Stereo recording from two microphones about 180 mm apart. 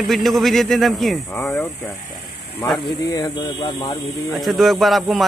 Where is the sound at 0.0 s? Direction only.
Centre (ahead or behind).